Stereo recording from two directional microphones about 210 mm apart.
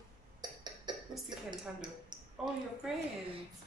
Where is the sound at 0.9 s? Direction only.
20° right (ahead or behind).